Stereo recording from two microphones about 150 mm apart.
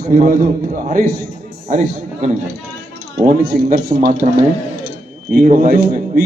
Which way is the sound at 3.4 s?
75° right (ahead or behind).